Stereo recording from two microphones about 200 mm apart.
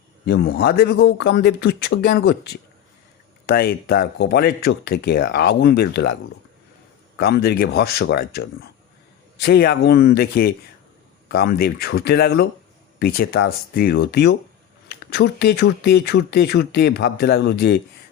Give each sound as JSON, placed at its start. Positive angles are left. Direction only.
{"t": 0.3, "sound": "speech", "side_deg": 50}
{"t": 7.2, "sound": "speech", "side_deg": 50}